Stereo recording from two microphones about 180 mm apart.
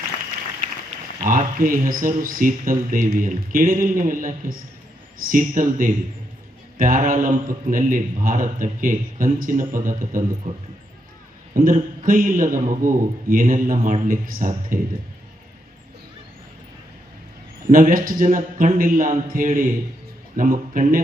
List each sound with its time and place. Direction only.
1.2 s a man's voice: 50° right (ahead or behind)
17.7 s a man's voice: 50° right (ahead or behind)